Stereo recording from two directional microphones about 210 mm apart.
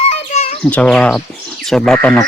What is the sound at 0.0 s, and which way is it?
Bird, 30° left (ahead or behind).